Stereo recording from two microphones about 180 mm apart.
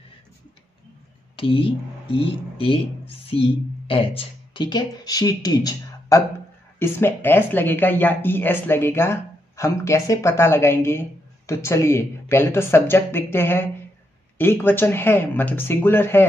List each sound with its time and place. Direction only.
1.3 s speech: 30° left (ahead or behind); by 16.3 s 10° left (ahead or behind)